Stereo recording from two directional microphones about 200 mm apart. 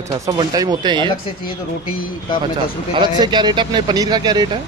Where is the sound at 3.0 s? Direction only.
20° right (ahead or behind).